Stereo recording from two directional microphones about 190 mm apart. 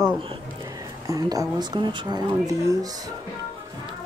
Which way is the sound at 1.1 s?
20° right (ahead or behind).